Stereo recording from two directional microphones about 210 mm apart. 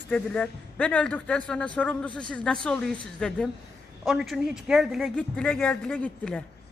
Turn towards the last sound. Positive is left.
turn(degrees=5)  # may be behind; listen again after turning